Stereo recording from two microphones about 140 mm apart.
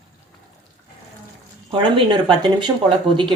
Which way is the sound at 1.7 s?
35° right (ahead or behind).